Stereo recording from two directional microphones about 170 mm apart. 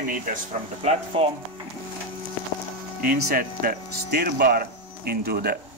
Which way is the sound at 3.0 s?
60° right (ahead or behind).